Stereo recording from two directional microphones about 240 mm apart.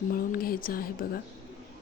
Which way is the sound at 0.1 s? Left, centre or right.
Left.